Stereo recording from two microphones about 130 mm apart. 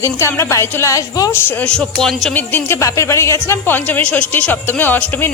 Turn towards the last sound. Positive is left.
turn(degrees=15)  # may be behind; listen again after turning